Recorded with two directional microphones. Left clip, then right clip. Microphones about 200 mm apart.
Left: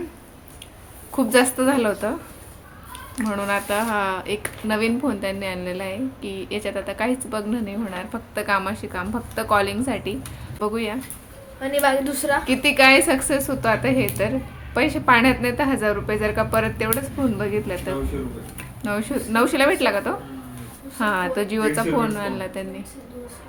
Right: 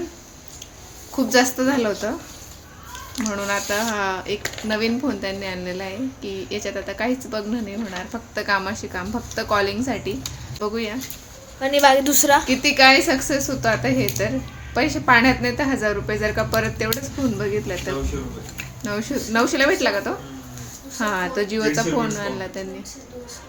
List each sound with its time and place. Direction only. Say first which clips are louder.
1.1 s speech: even; centre (ahead or behind)
3.2 s speech: even; centre (ahead or behind)
11.6 s a woman's voice: right 5 dB; 40° right (ahead or behind)
12.5 s speech: left 3 dB; 5° right (ahead or behind)
18.9 s speech: left 1 dB; 5° right (ahead or behind)